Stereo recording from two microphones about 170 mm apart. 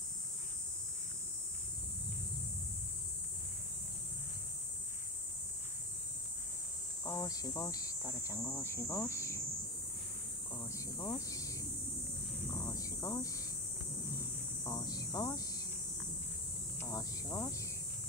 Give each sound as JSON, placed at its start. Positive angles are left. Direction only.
{"t": 7.1, "sound": "cricket", "side_deg": 20}
{"t": 10.5, "sound": "cricket", "side_deg": 20}
{"t": 14.0, "sound": "hum", "side_deg": 20}
{"t": 16.8, "sound": "cricket", "side_deg": 20}